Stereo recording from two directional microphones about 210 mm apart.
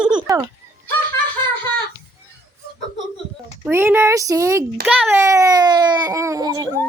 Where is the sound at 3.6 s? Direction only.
10° right (ahead or behind).